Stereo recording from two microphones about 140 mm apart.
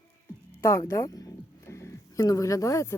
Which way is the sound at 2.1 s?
25° left (ahead or behind).